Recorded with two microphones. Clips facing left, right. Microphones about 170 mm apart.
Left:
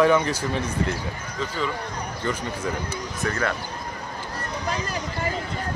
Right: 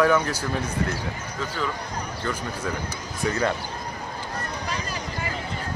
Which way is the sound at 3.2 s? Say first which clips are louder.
Right 2 dB; 20° right (ahead or behind).